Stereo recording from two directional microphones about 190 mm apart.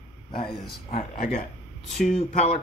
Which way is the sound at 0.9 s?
35° left (ahead or behind).